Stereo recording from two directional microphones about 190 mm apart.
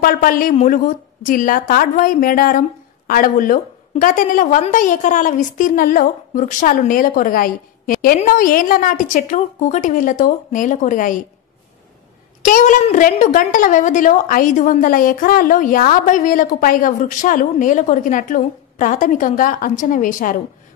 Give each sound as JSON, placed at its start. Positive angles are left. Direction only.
{"t": 0.0, "sound": "a woman's voice", "side_deg": 50}
{"t": 12.4, "sound": "a woman's voice", "side_deg": 45}